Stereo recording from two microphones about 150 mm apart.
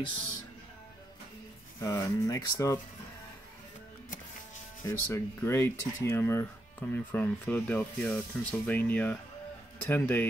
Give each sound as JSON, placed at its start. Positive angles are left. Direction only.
{"t": 1.8, "sound": "speech", "side_deg": 20}
{"t": 4.8, "sound": "speech", "side_deg": 20}